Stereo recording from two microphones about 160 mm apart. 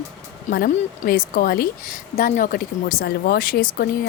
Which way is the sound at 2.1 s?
55° left (ahead or behind).